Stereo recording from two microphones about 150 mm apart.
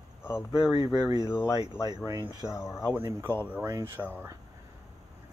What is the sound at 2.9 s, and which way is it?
Speech, 15° right (ahead or behind).